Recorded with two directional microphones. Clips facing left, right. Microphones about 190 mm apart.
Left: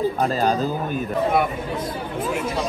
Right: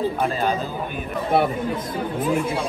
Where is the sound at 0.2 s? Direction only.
35° left (ahead or behind).